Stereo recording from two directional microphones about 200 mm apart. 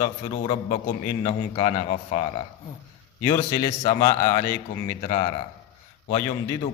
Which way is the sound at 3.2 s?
20° left (ahead or behind).